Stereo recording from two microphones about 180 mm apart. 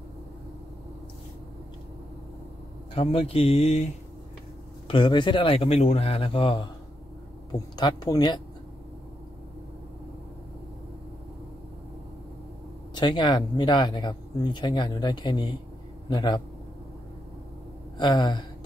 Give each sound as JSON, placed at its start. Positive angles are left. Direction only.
{"t": 2.9, "sound": "speech", "side_deg": 30}
{"t": 4.8, "sound": "speech", "side_deg": 25}
{"t": 12.9, "sound": "speech", "side_deg": 25}
{"t": 17.9, "sound": "gasp", "side_deg": 25}